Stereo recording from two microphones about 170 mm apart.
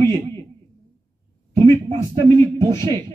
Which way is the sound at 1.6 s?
30° right (ahead or behind).